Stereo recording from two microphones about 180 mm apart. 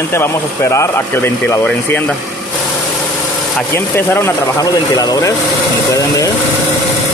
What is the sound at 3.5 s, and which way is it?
Speech, 10° left (ahead or behind).